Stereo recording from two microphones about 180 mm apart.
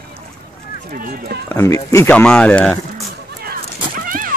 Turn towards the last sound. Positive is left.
turn(degrees=-50)  # may be behind; listen again after turning